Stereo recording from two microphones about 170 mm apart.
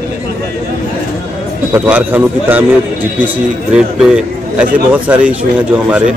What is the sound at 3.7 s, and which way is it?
A man's voice, 5° right (ahead or behind).